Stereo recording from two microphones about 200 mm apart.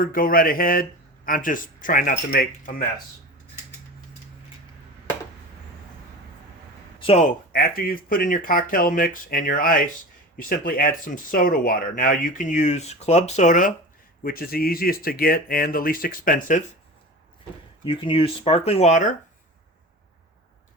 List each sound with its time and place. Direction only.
0.0 s speech: 45° left (ahead or behind)
7.0 s speech: 35° left (ahead or behind)
17.8 s speech: 25° left (ahead or behind)